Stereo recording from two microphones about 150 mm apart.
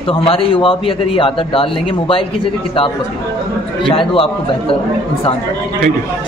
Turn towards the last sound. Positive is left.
turn(degrees=35)  # may be behind; listen again after turning